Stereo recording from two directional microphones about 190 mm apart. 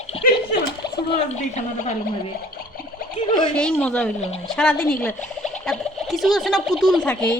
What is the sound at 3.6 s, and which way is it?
Speech, 5° left (ahead or behind).